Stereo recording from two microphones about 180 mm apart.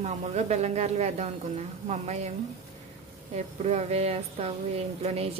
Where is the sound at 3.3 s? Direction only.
40° right (ahead or behind).